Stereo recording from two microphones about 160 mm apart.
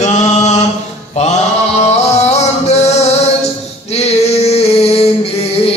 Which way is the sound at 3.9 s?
40° left (ahead or behind).